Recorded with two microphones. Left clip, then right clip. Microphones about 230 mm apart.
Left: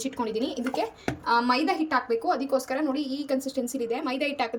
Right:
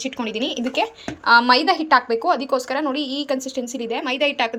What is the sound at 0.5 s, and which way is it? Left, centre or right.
Speech, right.